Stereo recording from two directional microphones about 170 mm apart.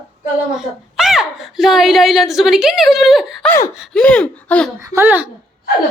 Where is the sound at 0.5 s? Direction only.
Centre (ahead or behind).